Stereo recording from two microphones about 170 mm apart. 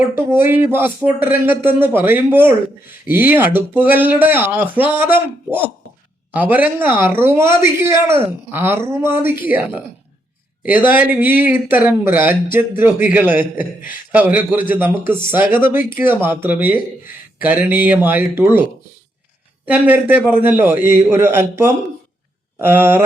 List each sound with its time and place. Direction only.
0.2 s speech: 15° right (ahead or behind)
10.6 s speech: 10° right (ahead or behind)
19.6 s speech: 10° right (ahead or behind)